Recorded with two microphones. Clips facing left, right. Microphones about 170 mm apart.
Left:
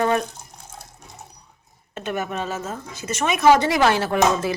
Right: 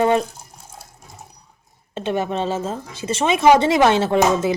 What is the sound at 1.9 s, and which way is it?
Speech, 30° right (ahead or behind).